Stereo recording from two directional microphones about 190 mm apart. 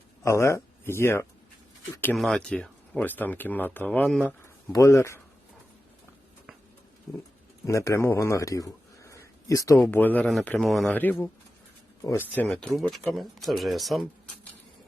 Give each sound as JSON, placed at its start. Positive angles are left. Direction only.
{"t": 0.2, "sound": "speech", "side_deg": 15}
{"t": 2.1, "sound": "speech", "side_deg": 0}
{"t": 4.7, "sound": "a man's voice", "side_deg": 15}
{"t": 7.6, "sound": "a man's voice", "side_deg": 15}